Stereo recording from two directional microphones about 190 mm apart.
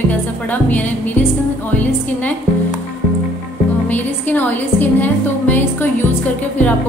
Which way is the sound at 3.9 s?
10° left (ahead or behind).